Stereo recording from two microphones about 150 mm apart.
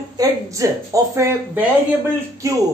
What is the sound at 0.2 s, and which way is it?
A woman's voice, 20° right (ahead or behind).